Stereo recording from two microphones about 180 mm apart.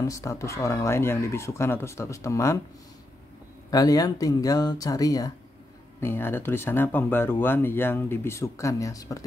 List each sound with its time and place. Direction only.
0.0 s speech: 15° left (ahead or behind)
3.7 s speech: 20° left (ahead or behind)